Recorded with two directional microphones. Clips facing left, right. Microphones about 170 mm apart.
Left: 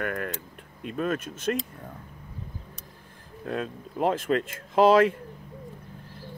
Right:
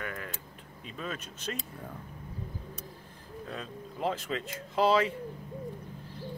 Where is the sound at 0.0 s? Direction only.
60° left (ahead or behind).